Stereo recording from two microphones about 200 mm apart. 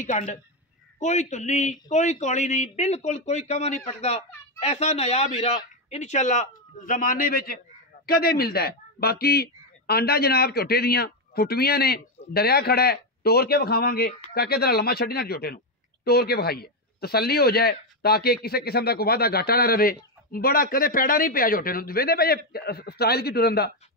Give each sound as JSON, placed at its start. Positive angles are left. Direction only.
{"t": 0.0, "sound": "a man's voice", "side_deg": 35}